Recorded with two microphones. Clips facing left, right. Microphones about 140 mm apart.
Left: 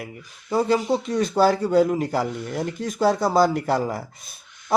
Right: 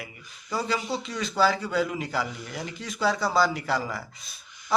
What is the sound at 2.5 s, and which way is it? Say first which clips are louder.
Speech: left 8 dB; 50° left (ahead or behind).